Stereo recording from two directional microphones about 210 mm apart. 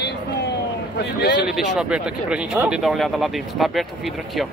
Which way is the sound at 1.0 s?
55° left (ahead or behind).